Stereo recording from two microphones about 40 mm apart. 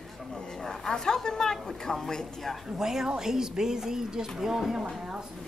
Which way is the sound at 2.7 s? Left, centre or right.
Centre.